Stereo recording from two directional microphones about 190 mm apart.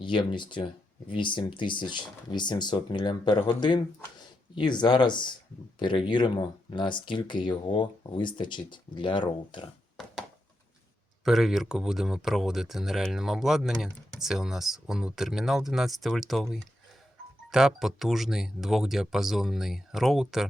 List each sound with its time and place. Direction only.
0.0 s speech: 25° left (ahead or behind)
11.3 s speech: centre (ahead or behind)